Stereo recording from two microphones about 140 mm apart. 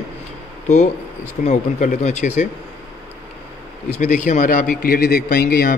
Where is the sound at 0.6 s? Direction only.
55° left (ahead or behind).